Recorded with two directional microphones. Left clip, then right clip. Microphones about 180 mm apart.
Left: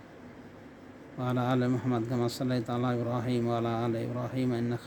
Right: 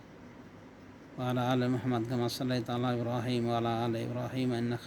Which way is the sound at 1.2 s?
15° left (ahead or behind).